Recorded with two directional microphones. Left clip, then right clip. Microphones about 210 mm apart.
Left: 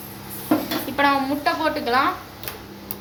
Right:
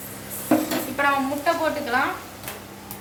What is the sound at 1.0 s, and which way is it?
Speech, 40° left (ahead or behind).